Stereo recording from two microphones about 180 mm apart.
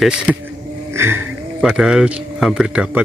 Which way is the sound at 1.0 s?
15° right (ahead or behind).